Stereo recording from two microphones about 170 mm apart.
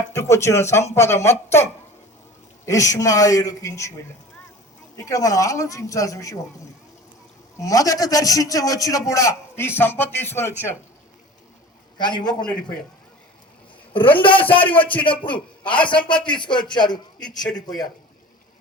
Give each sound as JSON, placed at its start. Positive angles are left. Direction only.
{"t": 0.1, "sound": "a man's voice", "side_deg": 15}
{"t": 4.9, "sound": "a man's voice", "side_deg": 20}
{"t": 7.6, "sound": "a man's voice", "side_deg": 20}
{"t": 11.9, "sound": "a man's voice", "side_deg": 25}
{"t": 13.9, "sound": "a man's voice", "side_deg": 30}